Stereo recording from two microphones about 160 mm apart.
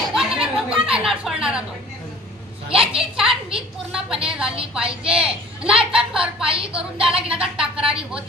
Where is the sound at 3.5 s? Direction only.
5° right (ahead or behind).